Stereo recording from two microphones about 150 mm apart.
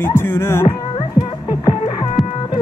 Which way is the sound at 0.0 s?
15° left (ahead or behind).